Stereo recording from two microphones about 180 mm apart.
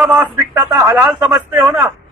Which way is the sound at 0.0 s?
20° right (ahead or behind).